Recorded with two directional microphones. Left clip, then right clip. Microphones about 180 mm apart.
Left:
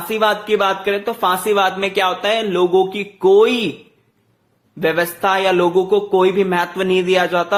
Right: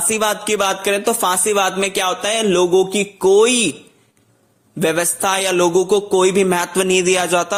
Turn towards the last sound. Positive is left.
turn(degrees=-40)  # may be behind; listen again after turning